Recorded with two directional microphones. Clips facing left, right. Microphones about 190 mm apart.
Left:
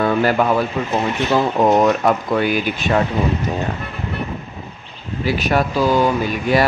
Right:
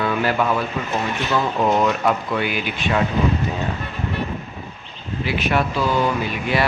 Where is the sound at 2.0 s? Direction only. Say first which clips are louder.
Left 4 dB; 40° left (ahead or behind).